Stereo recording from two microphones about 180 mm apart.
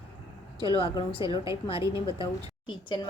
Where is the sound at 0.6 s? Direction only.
30° left (ahead or behind).